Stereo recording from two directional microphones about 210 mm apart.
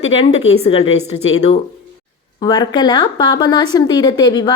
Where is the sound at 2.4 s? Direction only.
20° left (ahead or behind).